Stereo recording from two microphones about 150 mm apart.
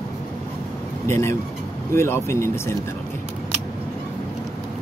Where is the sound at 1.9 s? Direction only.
15° left (ahead or behind).